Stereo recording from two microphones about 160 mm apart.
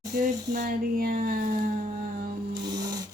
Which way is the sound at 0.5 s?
65° right (ahead or behind).